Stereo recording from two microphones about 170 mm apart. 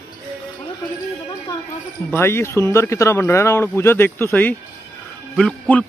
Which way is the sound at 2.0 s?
15° left (ahead or behind).